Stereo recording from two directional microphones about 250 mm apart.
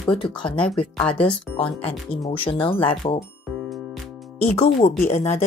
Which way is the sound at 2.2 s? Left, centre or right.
Left.